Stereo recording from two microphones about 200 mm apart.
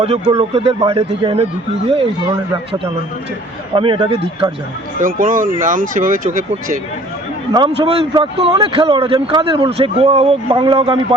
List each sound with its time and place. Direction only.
0.0 s speech: 30° right (ahead or behind)
3.8 s speech: 25° right (ahead or behind)
4.9 s speech: 40° right (ahead or behind)
7.8 s speech: 30° right (ahead or behind)